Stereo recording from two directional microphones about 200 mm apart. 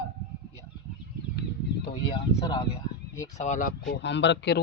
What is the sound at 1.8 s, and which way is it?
Speech, 30° left (ahead or behind).